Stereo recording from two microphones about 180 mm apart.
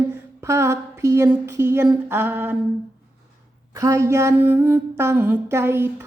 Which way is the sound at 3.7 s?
15° right (ahead or behind).